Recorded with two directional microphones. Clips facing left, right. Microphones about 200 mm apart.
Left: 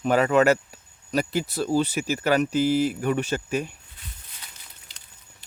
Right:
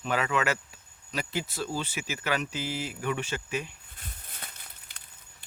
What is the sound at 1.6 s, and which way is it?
Speech, 35° left (ahead or behind).